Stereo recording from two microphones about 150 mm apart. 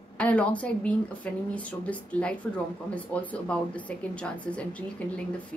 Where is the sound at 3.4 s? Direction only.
5° left (ahead or behind).